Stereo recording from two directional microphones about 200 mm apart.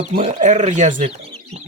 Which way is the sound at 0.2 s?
35° right (ahead or behind).